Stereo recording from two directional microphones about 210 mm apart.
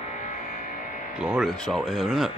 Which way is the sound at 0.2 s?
35° left (ahead or behind).